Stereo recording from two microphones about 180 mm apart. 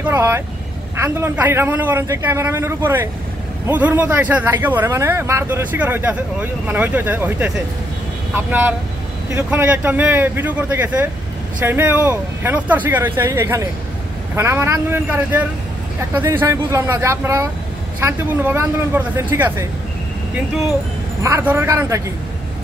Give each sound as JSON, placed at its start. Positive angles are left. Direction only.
{"t": 0.0, "sound": "speech", "side_deg": -15}
{"t": 21.2, "sound": "speech", "side_deg": -15}